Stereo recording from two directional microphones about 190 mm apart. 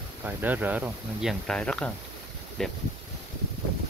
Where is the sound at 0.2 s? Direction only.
10° right (ahead or behind).